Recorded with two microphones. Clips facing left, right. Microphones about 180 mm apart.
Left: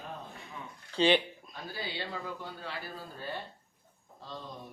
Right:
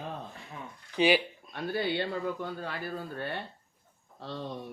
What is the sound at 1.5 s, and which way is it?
A man's voice, 65° right (ahead or behind).